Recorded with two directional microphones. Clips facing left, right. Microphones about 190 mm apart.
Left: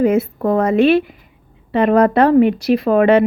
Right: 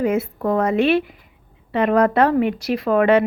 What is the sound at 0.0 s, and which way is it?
A woman's voice, 35° left (ahead or behind).